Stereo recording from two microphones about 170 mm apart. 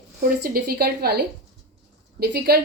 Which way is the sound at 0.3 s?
65° right (ahead or behind).